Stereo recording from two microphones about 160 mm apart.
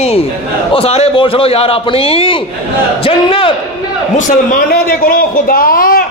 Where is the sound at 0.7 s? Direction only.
40° left (ahead or behind).